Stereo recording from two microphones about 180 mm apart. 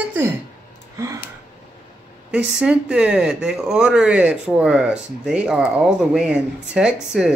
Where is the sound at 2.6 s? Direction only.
5° right (ahead or behind).